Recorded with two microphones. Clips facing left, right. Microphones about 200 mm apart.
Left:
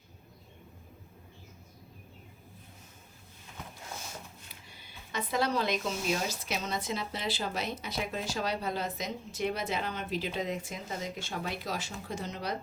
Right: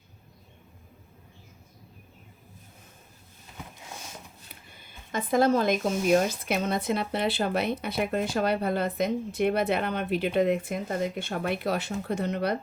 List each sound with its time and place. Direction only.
4.7 s speech: 50° right (ahead or behind)